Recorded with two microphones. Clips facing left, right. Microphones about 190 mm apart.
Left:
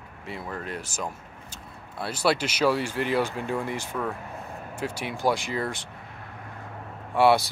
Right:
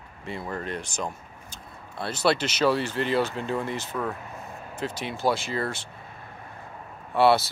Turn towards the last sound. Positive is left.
turn(degrees=15)  # may be behind; listen again after turning